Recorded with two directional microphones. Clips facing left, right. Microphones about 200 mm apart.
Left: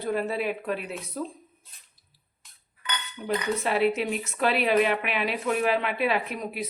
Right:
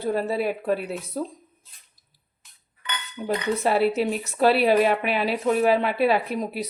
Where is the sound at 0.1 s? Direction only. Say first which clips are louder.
Right 3 dB; 35° right (ahead or behind).